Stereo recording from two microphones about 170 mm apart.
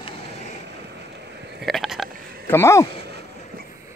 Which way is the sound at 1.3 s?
75° right (ahead or behind).